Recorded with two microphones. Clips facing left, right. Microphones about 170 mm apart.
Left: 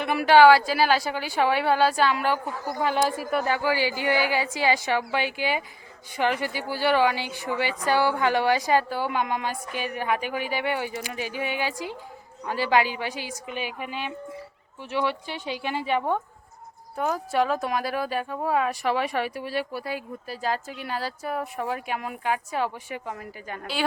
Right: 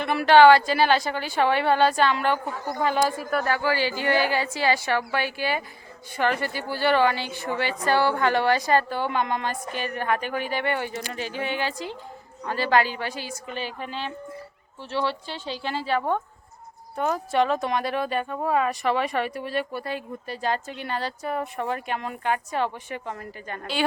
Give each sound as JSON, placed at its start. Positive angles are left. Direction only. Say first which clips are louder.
{"t": 0.0, "sound": "a woman's voice", "louder": "right 1 dB", "side_deg": 10}